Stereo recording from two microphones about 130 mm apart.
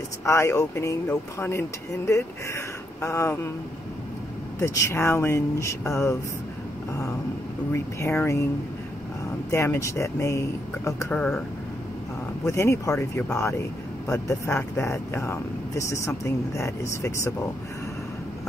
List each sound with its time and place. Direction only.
0.2 s speech: 20° left (ahead or behind)
4.6 s speech: 20° left (ahead or behind)
7.7 s speech: 20° left (ahead or behind)
9.5 s speech: 20° left (ahead or behind)
11.1 s speech: 10° left (ahead or behind)
12.4 s speech: 20° left (ahead or behind)